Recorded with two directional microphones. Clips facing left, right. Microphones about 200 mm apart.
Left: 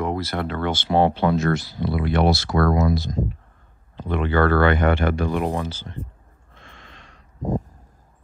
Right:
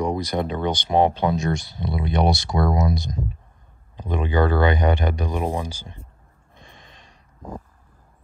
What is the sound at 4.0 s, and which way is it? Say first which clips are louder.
Speech: left 1 dB; 15° right (ahead or behind).